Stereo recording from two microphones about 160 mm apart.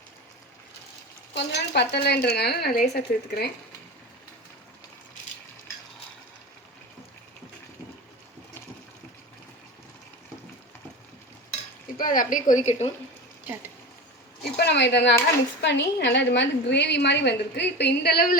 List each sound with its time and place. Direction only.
1.3 s a woman's voice: 90° left
11.9 s a woman's voice: 60° left (ahead or behind)
14.5 s a woman's voice: 90° left